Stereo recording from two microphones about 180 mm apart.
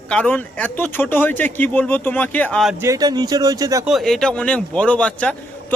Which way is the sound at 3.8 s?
Centre (ahead or behind).